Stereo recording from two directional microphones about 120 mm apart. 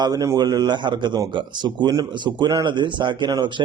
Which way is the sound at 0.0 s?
25° right (ahead or behind).